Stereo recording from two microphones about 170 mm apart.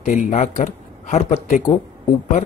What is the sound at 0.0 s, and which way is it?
Speech, 45° left (ahead or behind).